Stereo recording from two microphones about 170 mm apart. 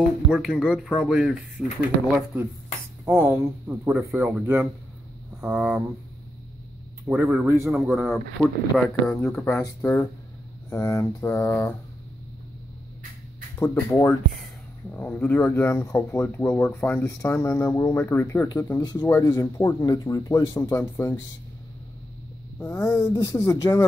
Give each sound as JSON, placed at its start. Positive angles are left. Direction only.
{"t": 0.3, "sound": "speech", "side_deg": 0}
{"t": 3.1, "sound": "speech", "side_deg": -15}
{"t": 7.1, "sound": "speech", "side_deg": -15}
{"t": 7.9, "sound": "speech", "side_deg": 0}
{"t": 9.2, "sound": "speech", "side_deg": 15}
{"t": 13.6, "sound": "speech", "side_deg": 15}
{"t": 19.0, "sound": "speech", "side_deg": 15}
{"t": 22.6, "sound": "speech", "side_deg": 15}